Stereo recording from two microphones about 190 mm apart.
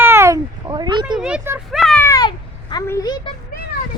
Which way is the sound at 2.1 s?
20° left (ahead or behind).